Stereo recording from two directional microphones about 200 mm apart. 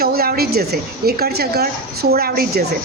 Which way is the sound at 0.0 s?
50° right (ahead or behind).